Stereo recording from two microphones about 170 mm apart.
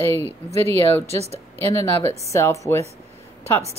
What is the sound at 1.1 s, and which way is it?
Speech, 40° right (ahead or behind).